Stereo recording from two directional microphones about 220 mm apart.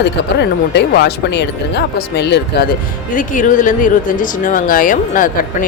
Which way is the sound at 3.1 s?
35° left (ahead or behind).